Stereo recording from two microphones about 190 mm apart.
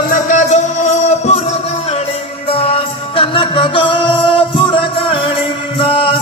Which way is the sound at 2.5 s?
30° left (ahead or behind).